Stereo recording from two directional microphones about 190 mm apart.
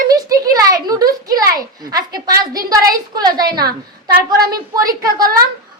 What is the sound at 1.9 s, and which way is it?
A woman's voice, 20° right (ahead or behind).